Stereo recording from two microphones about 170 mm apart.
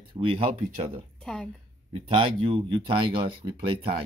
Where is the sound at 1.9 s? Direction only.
35° right (ahead or behind).